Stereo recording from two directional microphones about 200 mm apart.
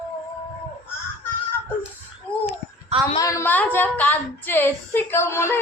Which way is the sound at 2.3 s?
25° left (ahead or behind).